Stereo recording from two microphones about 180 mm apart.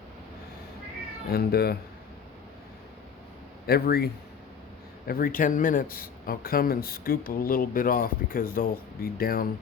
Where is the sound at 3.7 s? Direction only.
60° left (ahead or behind).